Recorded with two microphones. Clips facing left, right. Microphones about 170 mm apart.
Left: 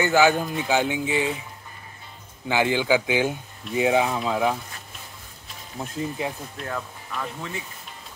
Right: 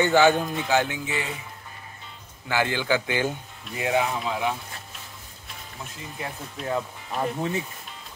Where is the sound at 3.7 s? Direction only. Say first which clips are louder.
Left 4 dB; 25° left (ahead or behind).